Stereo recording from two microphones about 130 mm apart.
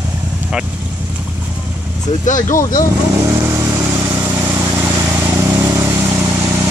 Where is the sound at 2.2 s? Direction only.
75° left (ahead or behind).